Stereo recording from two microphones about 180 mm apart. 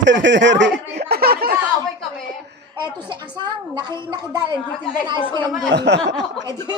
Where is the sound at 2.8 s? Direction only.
25° right (ahead or behind).